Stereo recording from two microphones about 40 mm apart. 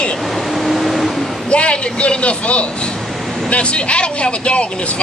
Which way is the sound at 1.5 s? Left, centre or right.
Left.